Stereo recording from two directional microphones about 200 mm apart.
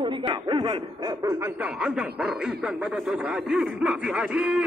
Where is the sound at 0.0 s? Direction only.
25° right (ahead or behind).